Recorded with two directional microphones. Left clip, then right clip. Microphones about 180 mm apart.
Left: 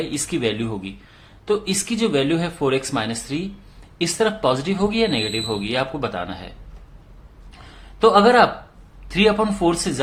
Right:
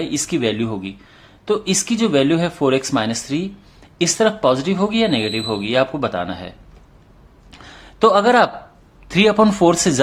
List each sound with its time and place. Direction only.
0.0 s speech: 20° right (ahead or behind)
7.9 s speech: 35° right (ahead or behind)